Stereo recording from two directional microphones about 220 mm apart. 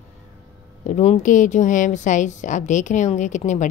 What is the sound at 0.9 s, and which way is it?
A woman's voice, 35° left (ahead or behind).